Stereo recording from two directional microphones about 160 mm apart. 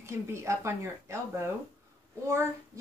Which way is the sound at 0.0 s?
15° right (ahead or behind).